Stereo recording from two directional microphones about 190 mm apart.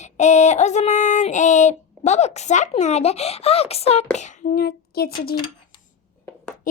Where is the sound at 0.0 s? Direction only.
35° left (ahead or behind).